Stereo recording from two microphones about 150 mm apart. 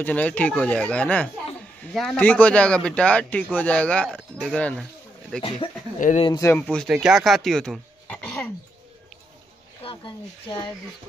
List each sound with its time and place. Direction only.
0.0 s a man's voice: 10° left (ahead or behind)
5.6 s speech: 35° left (ahead or behind)
5.9 s speech: 60° left (ahead or behind)
6.4 s a man's voice: 15° left (ahead or behind)
6.9 s speech: centre (ahead or behind)
9.8 s speech: 35° left (ahead or behind)